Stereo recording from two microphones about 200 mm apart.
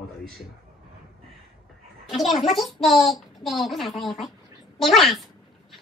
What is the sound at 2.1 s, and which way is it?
A woman's voice, centre (ahead or behind).